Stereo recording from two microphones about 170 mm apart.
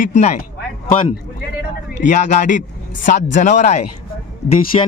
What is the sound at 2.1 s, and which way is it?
Speech, 50° left (ahead or behind).